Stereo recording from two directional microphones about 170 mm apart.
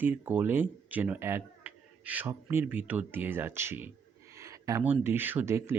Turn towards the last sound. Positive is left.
turn(degrees=-15)  # may be behind; listen again after turning